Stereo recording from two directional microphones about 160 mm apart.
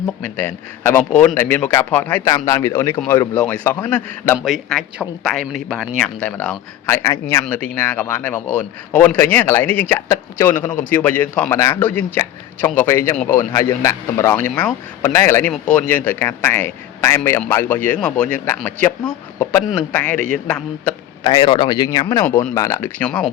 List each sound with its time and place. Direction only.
0.3 s a man's voice: 15° left (ahead or behind)
4.4 s speech: centre (ahead or behind)
6.8 s a man's voice: 20° left (ahead or behind)
21.2 s a man's voice: 30° left (ahead or behind)
23.0 s a man's voice: 5° left (ahead or behind)